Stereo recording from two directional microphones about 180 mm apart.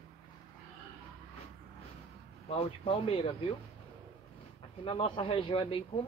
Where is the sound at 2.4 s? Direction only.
30° left (ahead or behind).